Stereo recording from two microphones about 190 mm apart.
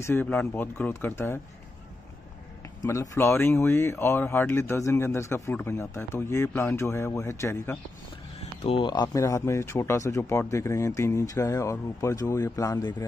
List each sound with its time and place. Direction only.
0.0 s speech: 10° left (ahead or behind)
2.8 s speech: 15° left (ahead or behind)
8.4 s speech: 30° left (ahead or behind)